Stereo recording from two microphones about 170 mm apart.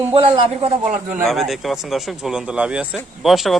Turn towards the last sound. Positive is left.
turn(degrees=0)  # may be behind; listen again after turning